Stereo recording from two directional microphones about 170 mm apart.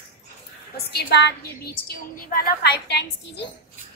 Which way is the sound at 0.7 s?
75° left (ahead or behind).